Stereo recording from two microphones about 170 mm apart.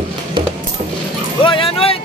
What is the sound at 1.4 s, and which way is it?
Vehicle, 30° left (ahead or behind).